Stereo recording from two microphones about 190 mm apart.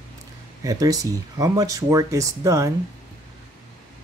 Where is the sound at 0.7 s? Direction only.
20° right (ahead or behind).